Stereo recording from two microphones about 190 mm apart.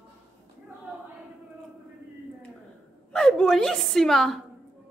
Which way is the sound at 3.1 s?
5° left (ahead or behind).